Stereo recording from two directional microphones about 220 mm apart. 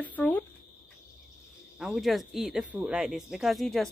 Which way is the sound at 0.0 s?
5° left (ahead or behind).